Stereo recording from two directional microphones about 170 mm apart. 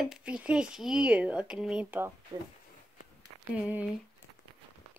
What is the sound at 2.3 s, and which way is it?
Speech, 25° right (ahead or behind).